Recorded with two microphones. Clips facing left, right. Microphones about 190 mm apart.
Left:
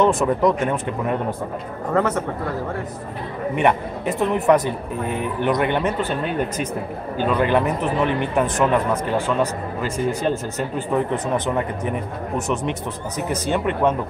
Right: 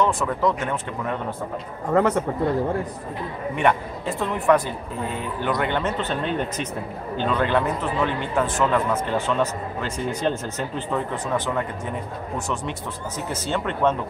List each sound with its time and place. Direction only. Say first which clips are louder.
0.0 s speech: left 5 dB; 20° left (ahead or behind)
2.0 s speech: right 1 dB; 15° right (ahead or behind)
3.5 s speech: left 2 dB; 20° left (ahead or behind)